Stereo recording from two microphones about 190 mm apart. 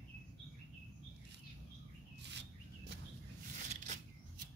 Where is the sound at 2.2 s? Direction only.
65° right (ahead or behind).